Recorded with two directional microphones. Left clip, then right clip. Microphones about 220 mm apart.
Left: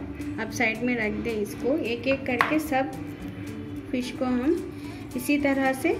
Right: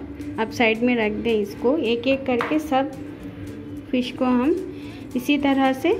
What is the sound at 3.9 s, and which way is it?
A woman's voice, 35° right (ahead or behind).